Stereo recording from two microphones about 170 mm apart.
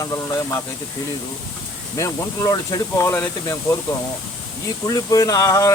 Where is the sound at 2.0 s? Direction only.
20° left (ahead or behind).